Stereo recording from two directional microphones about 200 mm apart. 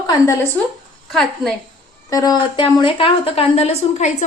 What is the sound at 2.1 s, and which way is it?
A woman's voice, 20° left (ahead or behind).